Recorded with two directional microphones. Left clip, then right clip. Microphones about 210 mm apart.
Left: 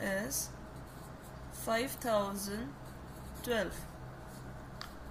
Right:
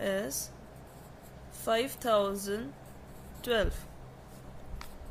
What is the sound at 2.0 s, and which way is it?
Speech, 50° right (ahead or behind).